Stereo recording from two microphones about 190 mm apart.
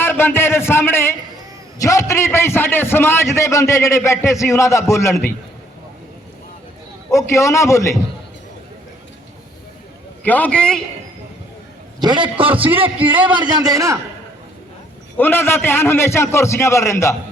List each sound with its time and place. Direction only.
0.0 s a man's voice: 10° left (ahead or behind)
7.1 s a man's voice: 15° left (ahead or behind)
10.2 s a man's voice: 10° left (ahead or behind)
11.9 s a man's voice: 25° right (ahead or behind)
15.2 s a man's voice: 10° left (ahead or behind)